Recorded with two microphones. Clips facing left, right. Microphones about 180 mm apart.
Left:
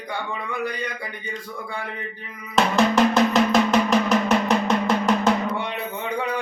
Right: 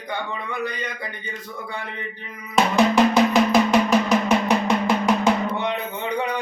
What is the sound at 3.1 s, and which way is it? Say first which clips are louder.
Drum: right 1 dB; 5° right (ahead or behind).